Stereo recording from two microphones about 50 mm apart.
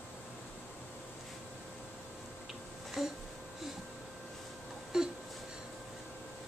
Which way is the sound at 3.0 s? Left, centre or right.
Centre.